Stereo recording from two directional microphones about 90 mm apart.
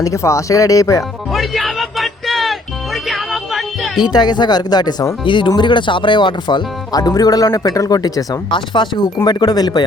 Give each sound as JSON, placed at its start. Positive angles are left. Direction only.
{"t": 0.0, "sound": "speech", "side_deg": 35}
{"t": 1.3, "sound": "music", "side_deg": 0}
{"t": 4.1, "sound": "speech", "side_deg": 55}
{"t": 5.2, "sound": "speech", "side_deg": 65}
{"t": 8.4, "sound": "speech", "side_deg": 65}
{"t": 9.2, "sound": "speech", "side_deg": 45}